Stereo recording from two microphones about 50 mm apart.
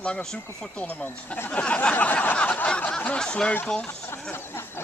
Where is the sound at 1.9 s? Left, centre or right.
Left.